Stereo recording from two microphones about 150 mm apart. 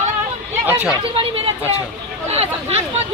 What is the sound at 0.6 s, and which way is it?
Speech, 10° right (ahead or behind).